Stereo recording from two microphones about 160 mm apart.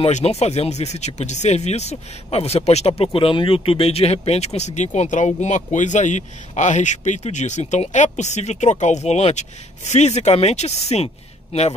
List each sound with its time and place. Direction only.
0.0 s speech: 40° left (ahead or behind)